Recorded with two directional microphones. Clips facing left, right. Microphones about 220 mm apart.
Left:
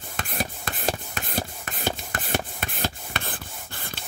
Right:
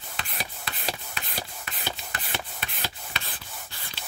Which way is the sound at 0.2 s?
50° left (ahead or behind).